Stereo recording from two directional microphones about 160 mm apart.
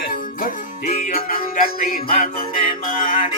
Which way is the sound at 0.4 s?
60° left (ahead or behind).